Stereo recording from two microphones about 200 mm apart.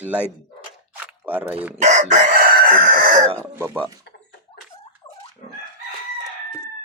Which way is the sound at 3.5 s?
10° right (ahead or behind).